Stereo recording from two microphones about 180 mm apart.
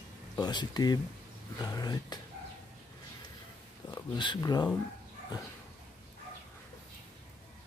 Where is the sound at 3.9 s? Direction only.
25° left (ahead or behind).